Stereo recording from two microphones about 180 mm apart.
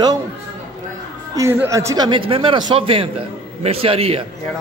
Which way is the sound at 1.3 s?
15° right (ahead or behind).